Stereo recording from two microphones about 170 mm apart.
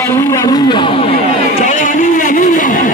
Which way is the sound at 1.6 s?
45° left (ahead or behind).